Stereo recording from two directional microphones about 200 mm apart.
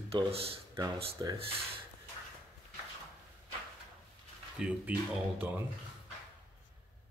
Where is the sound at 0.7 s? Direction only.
15° right (ahead or behind).